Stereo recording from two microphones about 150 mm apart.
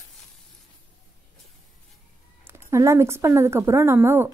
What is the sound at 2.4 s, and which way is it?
A woman's voice, 20° right (ahead or behind).